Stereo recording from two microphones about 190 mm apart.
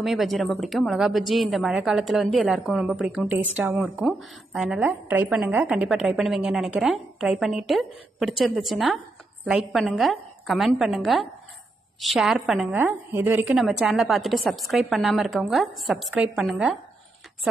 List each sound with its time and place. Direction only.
0.0 s a woman's voice: centre (ahead or behind)